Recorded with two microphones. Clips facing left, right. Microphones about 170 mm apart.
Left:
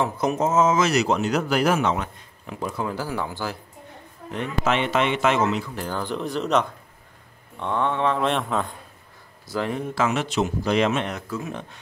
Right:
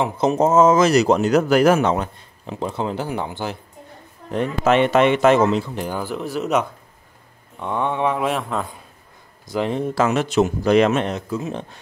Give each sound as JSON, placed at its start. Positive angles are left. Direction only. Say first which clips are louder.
{"t": 0.0, "sound": "speech", "louder": "right 5 dB", "side_deg": -25}
{"t": 4.3, "sound": "speech", "louder": "right 6 dB", "side_deg": -40}
{"t": 5.8, "sound": "a sound", "louder": "right 2 dB", "side_deg": -10}
{"t": 9.5, "sound": "speech", "louder": "right 4 dB", "side_deg": -20}
{"t": 9.9, "sound": "speech", "louder": "right 5 dB", "side_deg": -40}
{"t": 11.1, "sound": "speech", "louder": "right 5 dB", "side_deg": -20}